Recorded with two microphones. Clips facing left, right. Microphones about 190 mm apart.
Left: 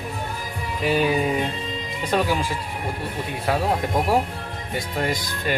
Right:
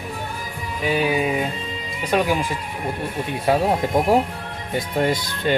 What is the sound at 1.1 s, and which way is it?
Speech, 10° right (ahead or behind).